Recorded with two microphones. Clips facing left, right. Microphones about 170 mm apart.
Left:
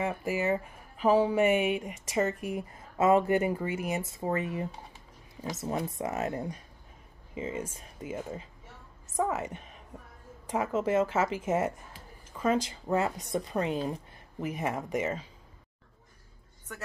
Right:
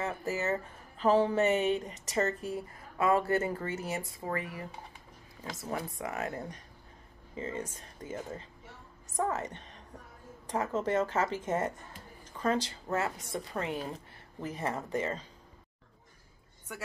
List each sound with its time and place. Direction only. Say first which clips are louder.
0.0 s speech: left 3 dB; 10° left (ahead or behind)
16.7 s a woman's voice: even; 10° right (ahead or behind)